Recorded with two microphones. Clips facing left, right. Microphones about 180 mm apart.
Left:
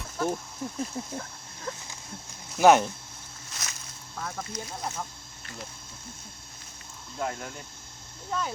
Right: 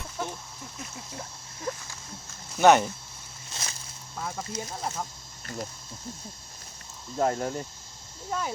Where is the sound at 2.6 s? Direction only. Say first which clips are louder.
Even; centre (ahead or behind).